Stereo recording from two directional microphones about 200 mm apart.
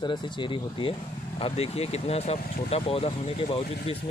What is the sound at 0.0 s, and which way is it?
Speech, 20° left (ahead or behind).